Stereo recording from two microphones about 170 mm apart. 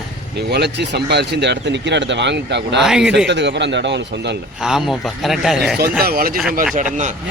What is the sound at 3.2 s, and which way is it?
Speech, 90° right.